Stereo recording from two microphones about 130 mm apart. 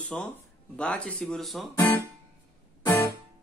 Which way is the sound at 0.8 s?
10° left (ahead or behind).